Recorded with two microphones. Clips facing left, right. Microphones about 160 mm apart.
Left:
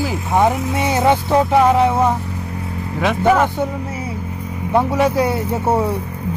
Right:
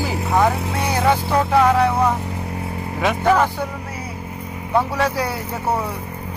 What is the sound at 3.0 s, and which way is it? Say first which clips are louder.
Speech: left 2 dB; centre (ahead or behind).